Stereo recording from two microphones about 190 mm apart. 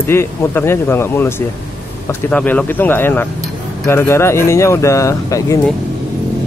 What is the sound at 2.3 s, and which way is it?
Speech, 10° left (ahead or behind).